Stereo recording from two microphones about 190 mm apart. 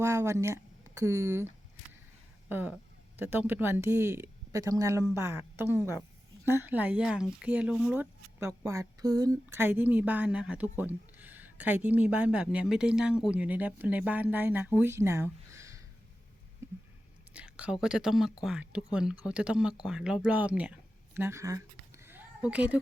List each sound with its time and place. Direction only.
0.0 s speech: 15° right (ahead or behind)
16.6 s a sound: 15° right (ahead or behind)
17.3 s speech: 5° right (ahead or behind)